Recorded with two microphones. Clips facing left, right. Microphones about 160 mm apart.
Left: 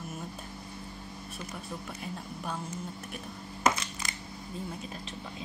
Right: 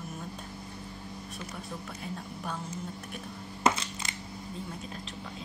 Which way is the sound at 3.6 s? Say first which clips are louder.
Right 1 dB; 30° right (ahead or behind).